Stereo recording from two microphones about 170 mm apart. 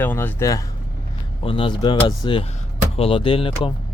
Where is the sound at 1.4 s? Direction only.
30° left (ahead or behind).